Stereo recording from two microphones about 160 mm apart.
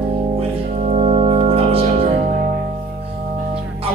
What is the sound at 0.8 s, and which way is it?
Music, 45° right (ahead or behind).